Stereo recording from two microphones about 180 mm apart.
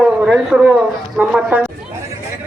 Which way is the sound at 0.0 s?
5° right (ahead or behind).